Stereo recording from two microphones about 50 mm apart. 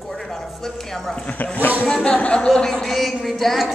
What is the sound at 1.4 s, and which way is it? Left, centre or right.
Speech, left.